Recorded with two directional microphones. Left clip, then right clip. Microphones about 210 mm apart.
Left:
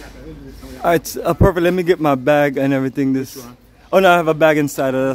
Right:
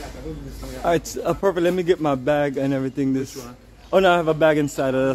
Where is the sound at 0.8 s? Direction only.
30° left (ahead or behind).